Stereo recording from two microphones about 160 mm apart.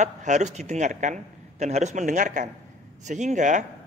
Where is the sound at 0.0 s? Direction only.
50° right (ahead or behind).